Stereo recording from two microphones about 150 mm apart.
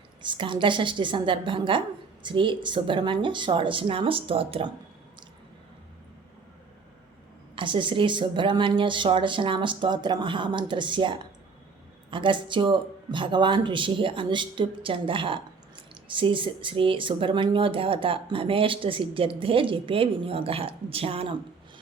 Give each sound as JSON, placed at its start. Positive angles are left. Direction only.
{"t": 0.2, "sound": "speech", "side_deg": -30}
{"t": 7.5, "sound": "speech", "side_deg": -35}